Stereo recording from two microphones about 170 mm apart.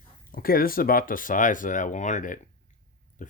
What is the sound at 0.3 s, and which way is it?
Speech, 60° left (ahead or behind).